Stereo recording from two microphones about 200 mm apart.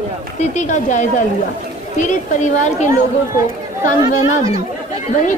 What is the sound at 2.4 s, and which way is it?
Speech, 35° left (ahead or behind).